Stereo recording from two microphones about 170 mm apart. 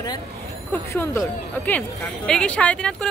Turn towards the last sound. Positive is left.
turn(degrees=5)  # may be behind; listen again after turning